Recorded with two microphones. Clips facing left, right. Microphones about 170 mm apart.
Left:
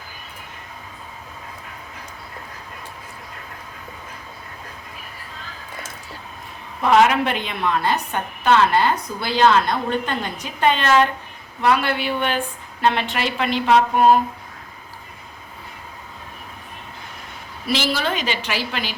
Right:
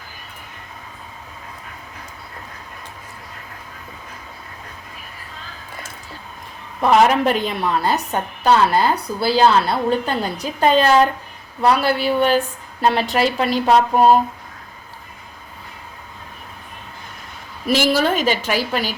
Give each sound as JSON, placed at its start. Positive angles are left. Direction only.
{"t": 7.0, "sound": "a woman's voice", "side_deg": -40}
{"t": 17.7, "sound": "a woman's voice", "side_deg": -45}